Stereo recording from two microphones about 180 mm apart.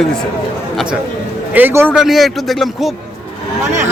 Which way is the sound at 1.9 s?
Centre (ahead or behind).